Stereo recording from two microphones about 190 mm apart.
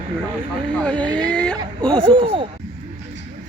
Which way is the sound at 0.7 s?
5° left (ahead or behind).